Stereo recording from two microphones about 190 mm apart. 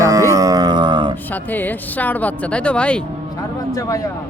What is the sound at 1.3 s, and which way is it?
Speech, 10° left (ahead or behind).